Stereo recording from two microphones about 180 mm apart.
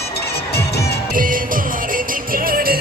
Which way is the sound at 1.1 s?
50° right (ahead or behind).